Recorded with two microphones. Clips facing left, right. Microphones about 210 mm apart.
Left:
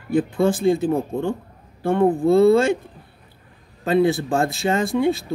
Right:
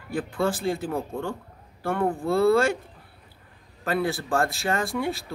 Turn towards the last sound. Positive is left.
turn(degrees=20)  # may be behind; listen again after turning